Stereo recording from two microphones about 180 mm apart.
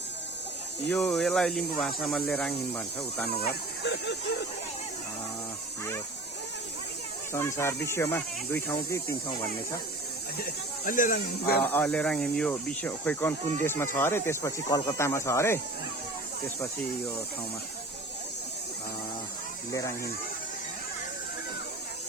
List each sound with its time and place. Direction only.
0.9 s speech: centre (ahead or behind)
3.4 s speech: 70° left (ahead or behind)
7.3 s speech: 15° left (ahead or behind)
10.8 s speech: 50° left (ahead or behind)
11.7 s speech: 5° left (ahead or behind)